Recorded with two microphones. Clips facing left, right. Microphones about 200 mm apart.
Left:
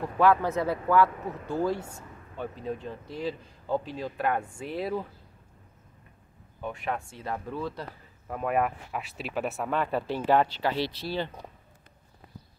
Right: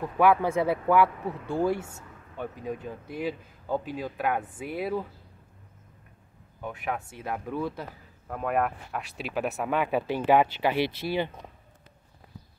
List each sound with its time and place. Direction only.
0.2 s speech: 10° right (ahead or behind)
6.6 s speech: 5° right (ahead or behind)
8.3 s speech: centre (ahead or behind); by 11.3 s 15° right (ahead or behind)